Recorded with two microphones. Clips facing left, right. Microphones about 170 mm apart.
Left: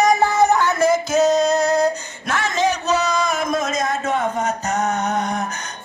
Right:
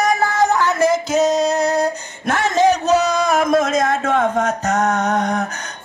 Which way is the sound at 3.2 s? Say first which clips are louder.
Right 6 dB; 70° right (ahead or behind).